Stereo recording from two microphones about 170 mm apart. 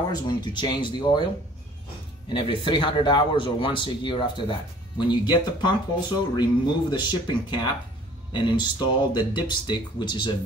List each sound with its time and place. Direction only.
0.1 s speech: 25° left (ahead or behind)
2.2 s speech: 30° left (ahead or behind)